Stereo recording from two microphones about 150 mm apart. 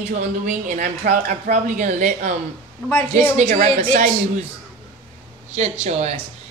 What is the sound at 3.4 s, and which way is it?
Speech, 60° right (ahead or behind).